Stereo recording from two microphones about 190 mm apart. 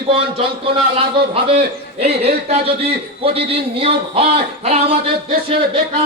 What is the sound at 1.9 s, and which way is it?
A man's voice, 35° right (ahead or behind).